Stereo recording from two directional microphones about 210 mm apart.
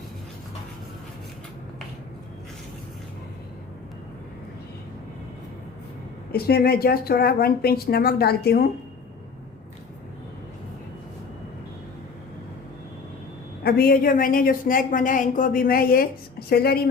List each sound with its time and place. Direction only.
6.3 s speech: 50° left (ahead or behind)
13.7 s speech: 45° left (ahead or behind)